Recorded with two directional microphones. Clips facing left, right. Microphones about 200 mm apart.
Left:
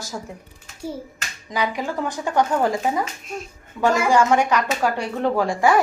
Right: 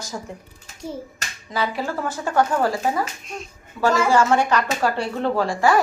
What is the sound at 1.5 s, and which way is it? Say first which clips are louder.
A child's voice: even; 15° left (ahead or behind).